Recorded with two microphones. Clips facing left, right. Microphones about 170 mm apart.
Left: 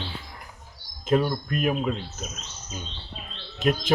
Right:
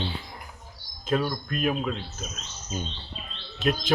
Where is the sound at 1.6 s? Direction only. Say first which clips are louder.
Left 1 dB; 5° left (ahead or behind).